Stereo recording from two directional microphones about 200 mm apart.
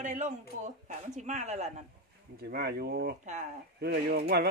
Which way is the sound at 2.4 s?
55° right (ahead or behind).